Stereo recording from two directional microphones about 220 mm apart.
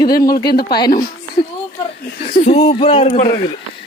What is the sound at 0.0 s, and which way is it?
Speech, 45° left (ahead or behind).